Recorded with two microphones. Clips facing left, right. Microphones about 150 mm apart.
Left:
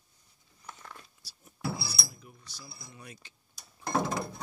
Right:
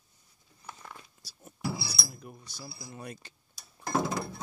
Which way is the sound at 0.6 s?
10° right (ahead or behind).